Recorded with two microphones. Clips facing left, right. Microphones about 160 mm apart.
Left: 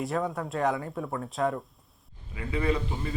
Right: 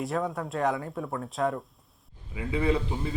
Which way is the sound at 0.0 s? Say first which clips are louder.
Even; centre (ahead or behind).